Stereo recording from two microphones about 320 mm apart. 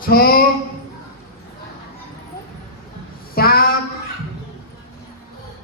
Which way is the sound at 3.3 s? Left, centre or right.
Left.